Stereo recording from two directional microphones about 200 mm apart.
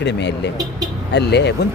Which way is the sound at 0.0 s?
60° left (ahead or behind).